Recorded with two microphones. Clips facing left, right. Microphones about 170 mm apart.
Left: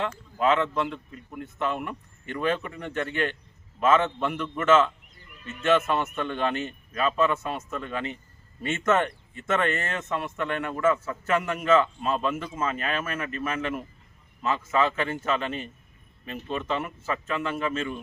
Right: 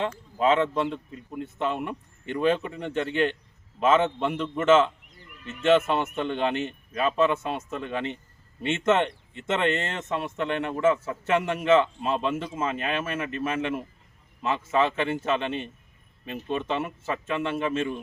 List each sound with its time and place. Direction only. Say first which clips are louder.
0.0 s speech: right 1 dB; 25° right (ahead or behind)
16.8 s speech: right 1 dB; 25° right (ahead or behind)